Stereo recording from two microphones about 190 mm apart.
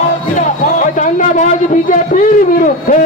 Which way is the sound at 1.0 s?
40° left (ahead or behind).